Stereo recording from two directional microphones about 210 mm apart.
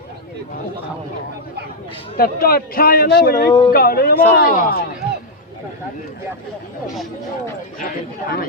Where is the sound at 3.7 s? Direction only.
45° left (ahead or behind).